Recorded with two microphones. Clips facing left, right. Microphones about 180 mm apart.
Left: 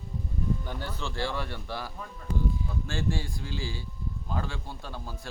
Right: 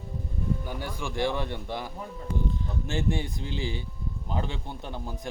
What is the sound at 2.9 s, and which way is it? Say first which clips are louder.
Speech: right 4 dB; 20° right (ahead or behind).